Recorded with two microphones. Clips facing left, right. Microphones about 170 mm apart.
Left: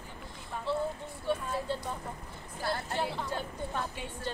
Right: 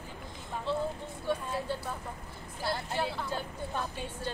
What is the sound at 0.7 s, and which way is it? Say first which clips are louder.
Vehicle: even; 15° right (ahead or behind).